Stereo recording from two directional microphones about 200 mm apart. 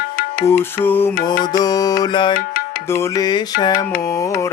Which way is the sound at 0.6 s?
10° left (ahead or behind).